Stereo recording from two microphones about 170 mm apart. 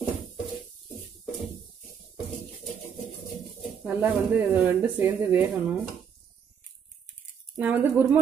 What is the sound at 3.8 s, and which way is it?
Speech, 10° right (ahead or behind).